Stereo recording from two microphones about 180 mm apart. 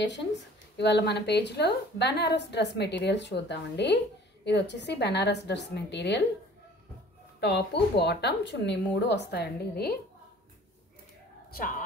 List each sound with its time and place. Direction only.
0.7 s a woman's voice: 70° left (ahead or behind)
7.3 s a woman's voice: 70° left (ahead or behind)
11.5 s a woman's voice: 55° left (ahead or behind)